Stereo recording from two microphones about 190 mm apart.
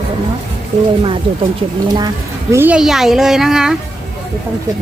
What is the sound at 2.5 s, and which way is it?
A child's voice, 10° right (ahead or behind).